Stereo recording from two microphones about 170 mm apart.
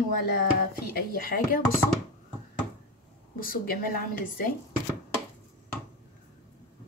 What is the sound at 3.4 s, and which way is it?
Speech, 55° left (ahead or behind).